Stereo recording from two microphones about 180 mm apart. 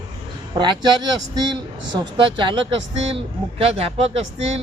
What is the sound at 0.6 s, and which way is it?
Speech, 25° right (ahead or behind).